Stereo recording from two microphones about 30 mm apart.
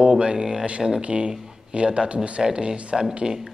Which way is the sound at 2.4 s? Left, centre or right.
Right.